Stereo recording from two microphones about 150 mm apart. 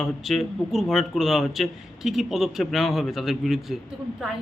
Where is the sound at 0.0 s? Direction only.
Centre (ahead or behind).